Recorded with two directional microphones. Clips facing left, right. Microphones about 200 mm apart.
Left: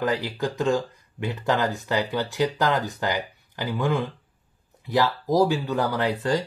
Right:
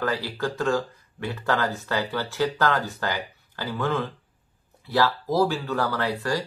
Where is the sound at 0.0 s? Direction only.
20° left (ahead or behind).